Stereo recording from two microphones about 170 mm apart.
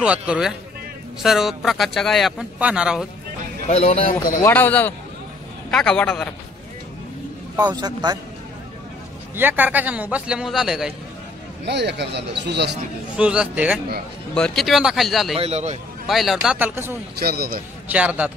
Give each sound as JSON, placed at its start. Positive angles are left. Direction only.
{"t": 0.0, "sound": "a man's voice", "side_deg": -5}
{"t": 3.6, "sound": "a man's voice", "side_deg": 40}
{"t": 4.4, "sound": "speech", "side_deg": 10}
{"t": 7.5, "sound": "a man's voice", "side_deg": -25}
{"t": 9.3, "sound": "a man's voice", "side_deg": -10}
{"t": 11.6, "sound": "speech", "side_deg": -80}
{"t": 13.1, "sound": "a man's voice", "side_deg": -5}
{"t": 15.3, "sound": "speech", "side_deg": -40}
{"t": 16.1, "sound": "a man's voice", "side_deg": 0}
{"t": 17.2, "sound": "a man's voice", "side_deg": -65}
{"t": 17.9, "sound": "a man's voice", "side_deg": -10}